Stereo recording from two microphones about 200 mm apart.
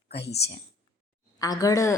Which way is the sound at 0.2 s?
55° left (ahead or behind).